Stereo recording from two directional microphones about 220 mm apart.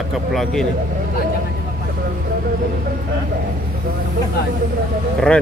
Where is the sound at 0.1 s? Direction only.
Centre (ahead or behind).